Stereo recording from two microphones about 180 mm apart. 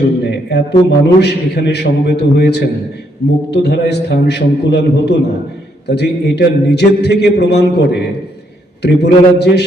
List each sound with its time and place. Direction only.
0.3 s a man's voice: 70° left (ahead or behind)